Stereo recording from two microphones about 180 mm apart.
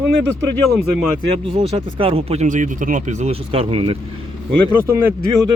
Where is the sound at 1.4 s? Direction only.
30° right (ahead or behind).